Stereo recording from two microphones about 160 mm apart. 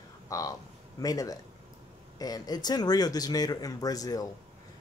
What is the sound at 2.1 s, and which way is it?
Speech, 25° left (ahead or behind).